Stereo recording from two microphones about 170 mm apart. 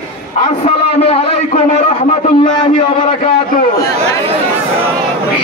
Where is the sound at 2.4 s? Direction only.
25° left (ahead or behind).